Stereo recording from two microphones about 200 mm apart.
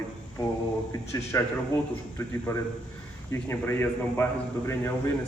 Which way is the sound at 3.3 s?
10° left (ahead or behind).